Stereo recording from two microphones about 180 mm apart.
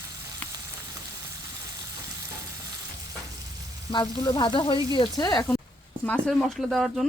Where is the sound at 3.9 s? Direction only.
25° left (ahead or behind).